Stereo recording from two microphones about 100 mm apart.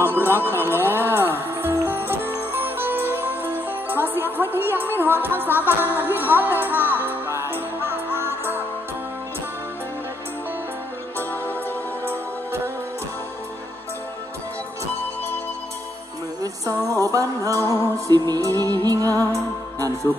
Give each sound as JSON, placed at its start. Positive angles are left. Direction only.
{"t": 0.0, "sound": "a sound", "side_deg": -20}
{"t": 0.7, "sound": "music", "side_deg": -20}
{"t": 16.6, "sound": "music", "side_deg": -35}